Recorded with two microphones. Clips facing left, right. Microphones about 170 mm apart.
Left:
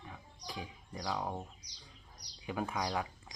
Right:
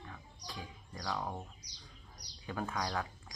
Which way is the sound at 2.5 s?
15° left (ahead or behind).